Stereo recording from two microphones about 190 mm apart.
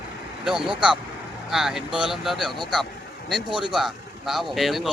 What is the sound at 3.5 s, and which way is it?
Speech, 25° right (ahead or behind).